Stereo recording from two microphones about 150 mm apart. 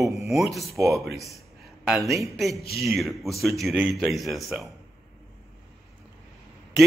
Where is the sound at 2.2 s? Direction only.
Centre (ahead or behind).